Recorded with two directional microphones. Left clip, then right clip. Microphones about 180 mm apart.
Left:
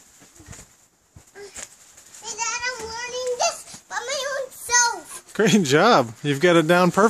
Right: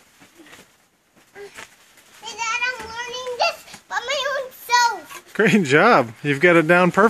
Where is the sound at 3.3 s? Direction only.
20° left (ahead or behind).